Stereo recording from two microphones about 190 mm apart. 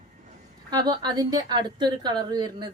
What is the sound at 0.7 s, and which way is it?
A woman's voice, 20° right (ahead or behind).